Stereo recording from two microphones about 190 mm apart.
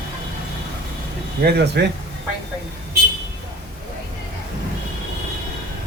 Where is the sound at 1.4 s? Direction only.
60° right (ahead or behind).